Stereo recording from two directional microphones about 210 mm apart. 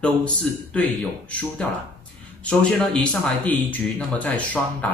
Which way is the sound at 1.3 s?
5° left (ahead or behind).